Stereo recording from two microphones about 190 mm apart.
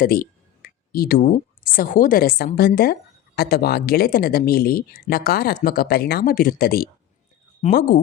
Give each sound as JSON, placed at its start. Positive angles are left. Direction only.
{"t": 0.0, "sound": "speech", "side_deg": 50}